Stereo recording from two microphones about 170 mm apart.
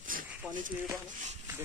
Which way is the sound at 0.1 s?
50° right (ahead or behind).